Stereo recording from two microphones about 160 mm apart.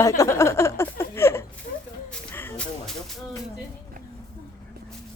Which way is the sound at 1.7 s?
60° left (ahead or behind).